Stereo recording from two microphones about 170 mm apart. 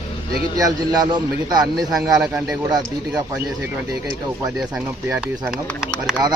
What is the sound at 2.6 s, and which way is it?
Speech, 25° right (ahead or behind).